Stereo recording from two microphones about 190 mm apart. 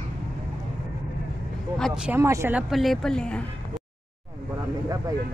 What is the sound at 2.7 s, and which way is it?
Speech, centre (ahead or behind).